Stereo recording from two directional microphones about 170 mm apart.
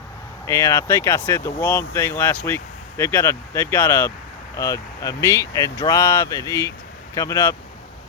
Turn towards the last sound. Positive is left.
turn(degrees=15)  # may be behind; listen again after turning